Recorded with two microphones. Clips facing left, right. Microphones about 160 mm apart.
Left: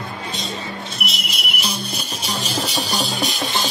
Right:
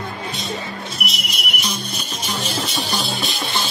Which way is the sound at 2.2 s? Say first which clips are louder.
Even; 35° left (ahead or behind).